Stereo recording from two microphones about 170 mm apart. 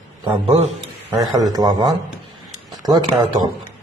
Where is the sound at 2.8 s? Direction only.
25° right (ahead or behind).